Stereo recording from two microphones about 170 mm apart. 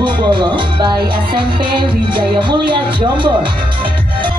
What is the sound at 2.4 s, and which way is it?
Music, 30° right (ahead or behind).